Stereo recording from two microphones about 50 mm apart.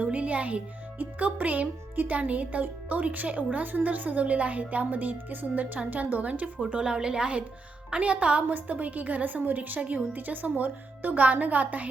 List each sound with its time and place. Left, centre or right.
0.0 s a woman's voice: right